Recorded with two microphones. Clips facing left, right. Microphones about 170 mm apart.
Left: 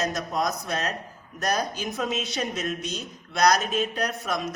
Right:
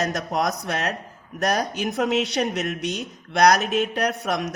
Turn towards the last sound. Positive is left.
turn(degrees=-65)  # may be behind; listen again after turning